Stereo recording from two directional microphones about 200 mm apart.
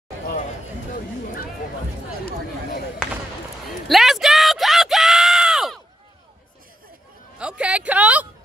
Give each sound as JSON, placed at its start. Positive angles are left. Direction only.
{"t": 3.0, "sound": "basketball bounce", "side_deg": -5}
{"t": 3.8, "sound": "a sound", "side_deg": 0}
{"t": 7.3, "sound": "music", "side_deg": -5}